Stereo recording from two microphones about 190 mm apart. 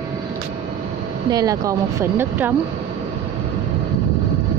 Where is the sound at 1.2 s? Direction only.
20° right (ahead or behind).